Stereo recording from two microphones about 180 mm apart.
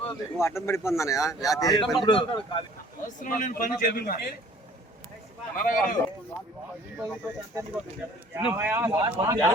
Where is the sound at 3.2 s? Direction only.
50° left (ahead or behind).